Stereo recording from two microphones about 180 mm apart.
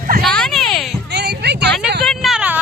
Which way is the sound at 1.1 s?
70° right (ahead or behind).